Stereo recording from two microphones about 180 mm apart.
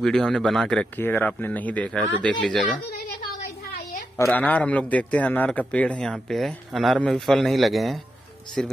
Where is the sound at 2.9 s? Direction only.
60° left (ahead or behind).